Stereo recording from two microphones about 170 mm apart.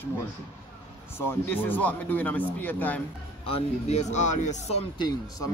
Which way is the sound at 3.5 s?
40° left (ahead or behind).